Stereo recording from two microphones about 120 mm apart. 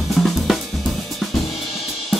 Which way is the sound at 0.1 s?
Centre (ahead or behind).